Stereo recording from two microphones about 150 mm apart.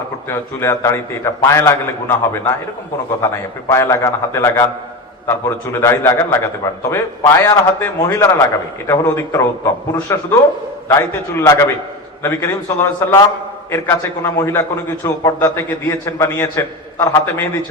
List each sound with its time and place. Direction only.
0.3 s a man's voice: 15° left (ahead or behind)